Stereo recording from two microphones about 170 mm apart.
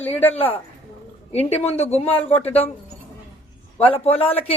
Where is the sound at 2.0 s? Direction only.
10° left (ahead or behind).